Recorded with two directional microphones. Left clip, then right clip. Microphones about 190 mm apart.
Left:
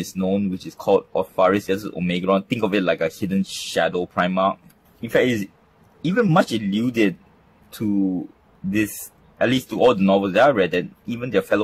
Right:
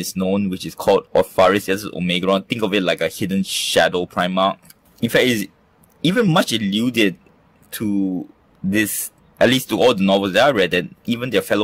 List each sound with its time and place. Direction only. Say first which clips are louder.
0.0 s speech: right 2 dB; 35° right (ahead or behind)
8.6 s speech: right 3 dB; 40° right (ahead or behind)